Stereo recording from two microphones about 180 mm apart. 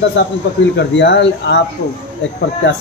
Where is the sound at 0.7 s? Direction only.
75° left (ahead or behind).